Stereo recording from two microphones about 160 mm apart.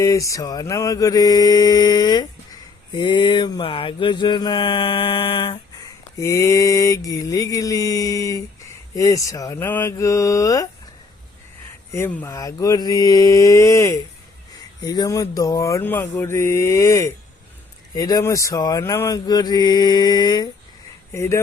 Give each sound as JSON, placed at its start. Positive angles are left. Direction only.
{"t": 0.0, "sound": "mantra", "side_deg": 20}
{"t": 6.1, "sound": "mantra", "side_deg": 20}
{"t": 11.9, "sound": "mantra", "side_deg": 15}
{"t": 21.1, "sound": "speech", "side_deg": 15}